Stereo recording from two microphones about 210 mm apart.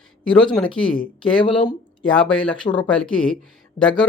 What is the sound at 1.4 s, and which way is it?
Speech, 25° left (ahead or behind).